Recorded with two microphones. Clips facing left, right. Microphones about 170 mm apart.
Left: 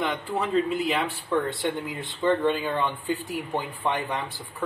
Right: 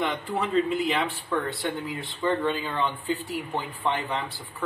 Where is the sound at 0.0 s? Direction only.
Centre (ahead or behind).